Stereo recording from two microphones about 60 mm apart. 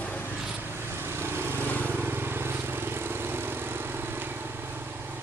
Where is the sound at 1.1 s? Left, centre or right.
Right.